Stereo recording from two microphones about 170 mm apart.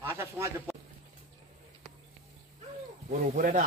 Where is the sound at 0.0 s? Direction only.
15° right (ahead or behind).